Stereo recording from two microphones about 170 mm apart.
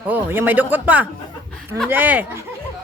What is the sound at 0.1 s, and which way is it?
A woman's voice, 10° right (ahead or behind).